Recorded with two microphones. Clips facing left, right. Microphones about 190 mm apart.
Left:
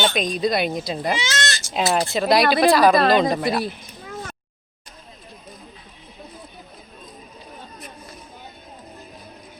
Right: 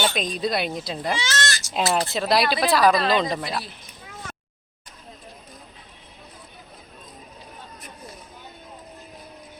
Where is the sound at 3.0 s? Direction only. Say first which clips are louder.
Left 5 dB; 50° left (ahead or behind).